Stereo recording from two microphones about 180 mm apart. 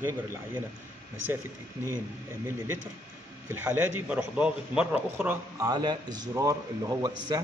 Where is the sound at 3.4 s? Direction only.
10° right (ahead or behind).